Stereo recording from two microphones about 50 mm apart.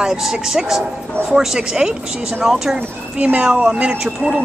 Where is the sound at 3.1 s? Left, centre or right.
Right.